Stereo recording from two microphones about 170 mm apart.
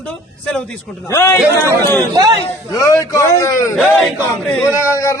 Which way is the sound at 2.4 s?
20° left (ahead or behind).